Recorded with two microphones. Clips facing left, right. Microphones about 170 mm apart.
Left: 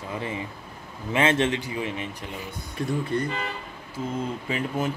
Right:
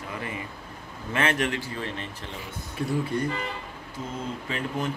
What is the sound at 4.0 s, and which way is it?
Speech, 10° left (ahead or behind).